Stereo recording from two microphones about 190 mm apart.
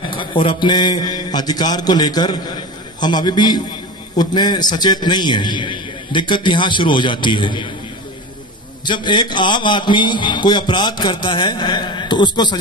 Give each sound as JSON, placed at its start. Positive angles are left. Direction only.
{"t": 0.1, "sound": "a man's voice", "side_deg": 25}
{"t": 8.8, "sound": "a man's voice", "side_deg": 25}